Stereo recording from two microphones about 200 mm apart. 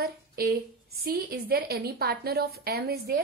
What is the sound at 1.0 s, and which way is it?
A woman's voice, 50° right (ahead or behind).